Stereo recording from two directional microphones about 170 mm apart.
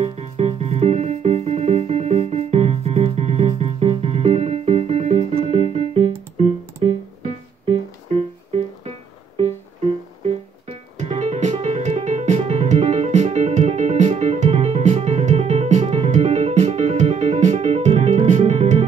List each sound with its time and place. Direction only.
0.0 s music: 35° right (ahead or behind)
10.2 s music: 35° right (ahead or behind)